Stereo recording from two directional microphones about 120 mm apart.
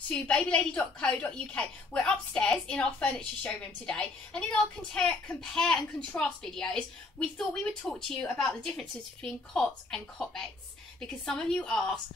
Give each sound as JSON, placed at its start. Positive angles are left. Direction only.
{"t": 0.1, "sound": "a woman's voice", "side_deg": 10}